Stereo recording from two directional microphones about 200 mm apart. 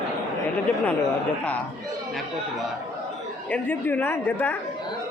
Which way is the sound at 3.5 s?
10° left (ahead or behind).